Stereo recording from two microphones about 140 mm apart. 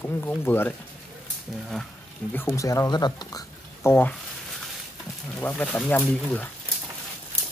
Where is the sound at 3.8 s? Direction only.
15° left (ahead or behind).